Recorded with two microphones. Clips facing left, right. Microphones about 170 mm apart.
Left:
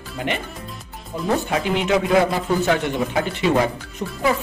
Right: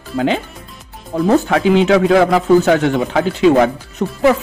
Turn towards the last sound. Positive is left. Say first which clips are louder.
# right 8 dB
turn(degrees=-75)  # may be behind; listen again after turning